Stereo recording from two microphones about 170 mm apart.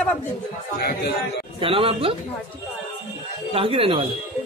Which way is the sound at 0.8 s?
70° left (ahead or behind).